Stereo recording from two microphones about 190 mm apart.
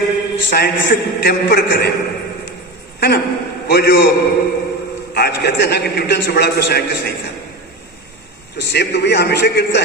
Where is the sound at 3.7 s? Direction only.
60° left (ahead or behind).